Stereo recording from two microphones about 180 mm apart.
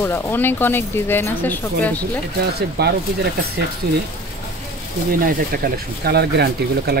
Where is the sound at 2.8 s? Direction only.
65° right (ahead or behind).